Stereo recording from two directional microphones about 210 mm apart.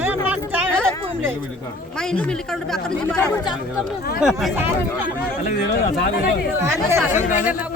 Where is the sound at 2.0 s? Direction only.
5° left (ahead or behind).